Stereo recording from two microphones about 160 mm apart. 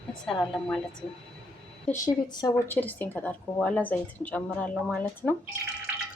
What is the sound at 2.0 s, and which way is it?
Speech, 25° left (ahead or behind).